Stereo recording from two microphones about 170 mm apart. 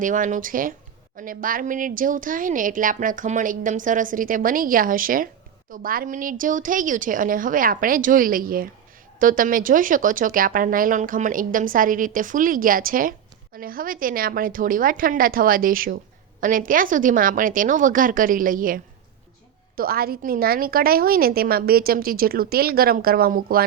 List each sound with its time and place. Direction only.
0.0 s a woman's voice: 50° right (ahead or behind)